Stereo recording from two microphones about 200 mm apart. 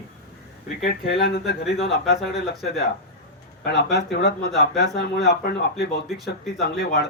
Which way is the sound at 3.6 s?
55° left (ahead or behind).